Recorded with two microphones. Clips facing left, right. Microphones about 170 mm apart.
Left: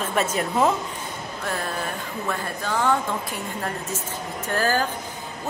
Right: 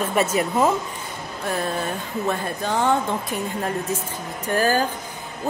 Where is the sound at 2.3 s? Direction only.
20° right (ahead or behind).